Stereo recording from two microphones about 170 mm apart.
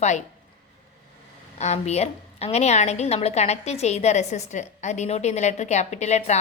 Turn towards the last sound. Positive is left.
turn(degrees=40)  # may be behind; listen again after turning